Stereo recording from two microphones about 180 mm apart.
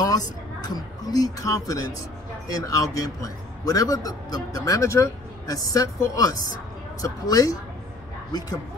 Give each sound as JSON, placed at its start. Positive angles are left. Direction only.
{"t": 0.0, "sound": "a man's voice", "side_deg": 20}